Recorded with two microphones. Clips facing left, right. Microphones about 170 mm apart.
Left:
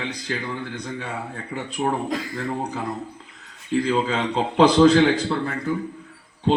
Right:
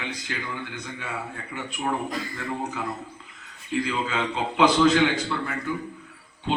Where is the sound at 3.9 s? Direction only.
35° left (ahead or behind).